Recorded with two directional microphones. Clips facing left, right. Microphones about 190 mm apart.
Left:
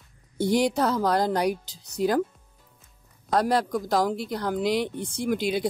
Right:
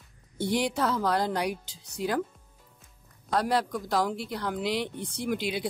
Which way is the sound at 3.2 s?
45° left (ahead or behind).